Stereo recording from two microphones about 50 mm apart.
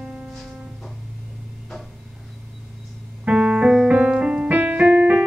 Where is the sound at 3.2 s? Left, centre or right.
Centre.